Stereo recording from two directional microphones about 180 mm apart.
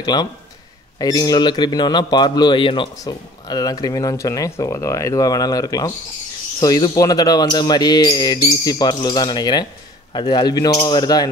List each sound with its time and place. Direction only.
0.0 s speech: 25° left (ahead or behind)